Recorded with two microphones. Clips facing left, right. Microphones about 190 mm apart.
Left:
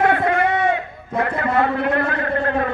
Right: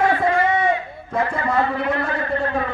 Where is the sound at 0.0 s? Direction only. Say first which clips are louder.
Left 1 dB; 60° left (ahead or behind).